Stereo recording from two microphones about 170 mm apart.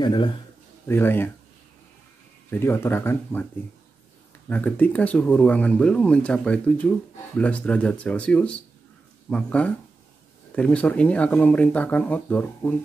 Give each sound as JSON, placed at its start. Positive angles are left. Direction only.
{"t": 0.0, "sound": "speech", "side_deg": 25}
{"t": 0.8, "sound": "speech", "side_deg": 15}
{"t": 2.5, "sound": "speech", "side_deg": 15}
{"t": 4.5, "sound": "speech", "side_deg": 10}